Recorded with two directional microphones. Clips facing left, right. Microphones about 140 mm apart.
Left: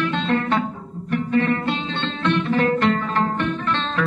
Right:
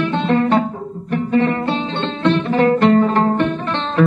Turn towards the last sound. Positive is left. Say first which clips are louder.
# right 5 dB
turn(degrees=-30)  # may be behind; listen again after turning